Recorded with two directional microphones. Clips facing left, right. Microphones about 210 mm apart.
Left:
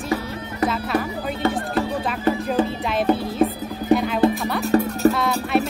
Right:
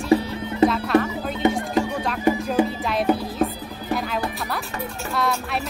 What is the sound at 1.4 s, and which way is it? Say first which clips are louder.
Music: right 2 dB; 20° right (ahead or behind).